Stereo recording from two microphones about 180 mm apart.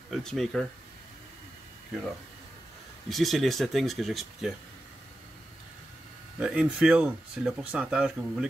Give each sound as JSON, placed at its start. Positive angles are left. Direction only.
{"t": 0.1, "sound": "speech", "side_deg": 0}
{"t": 3.1, "sound": "speech", "side_deg": 0}
{"t": 6.4, "sound": "speech", "side_deg": -5}